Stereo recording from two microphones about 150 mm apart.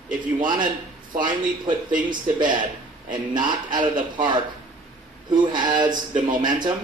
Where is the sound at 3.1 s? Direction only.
30° right (ahead or behind).